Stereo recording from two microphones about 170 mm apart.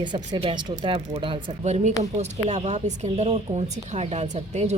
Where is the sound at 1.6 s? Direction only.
40° right (ahead or behind).